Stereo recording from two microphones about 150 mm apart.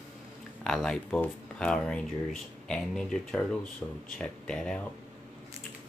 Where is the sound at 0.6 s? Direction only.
5° left (ahead or behind).